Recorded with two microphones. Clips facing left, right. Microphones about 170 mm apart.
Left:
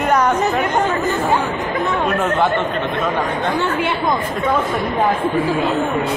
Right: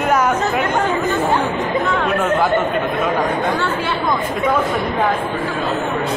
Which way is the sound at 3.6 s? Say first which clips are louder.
Left 1 dB; 20° left (ahead or behind).